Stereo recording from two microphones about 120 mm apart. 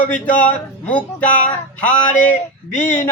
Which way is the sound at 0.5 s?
10° left (ahead or behind).